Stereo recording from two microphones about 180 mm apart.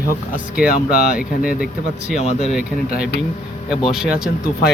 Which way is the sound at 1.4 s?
50° left (ahead or behind).